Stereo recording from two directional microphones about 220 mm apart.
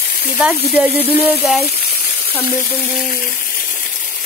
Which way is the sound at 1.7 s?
45° left (ahead or behind).